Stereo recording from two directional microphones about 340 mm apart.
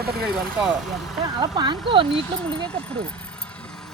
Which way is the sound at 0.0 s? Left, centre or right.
Right.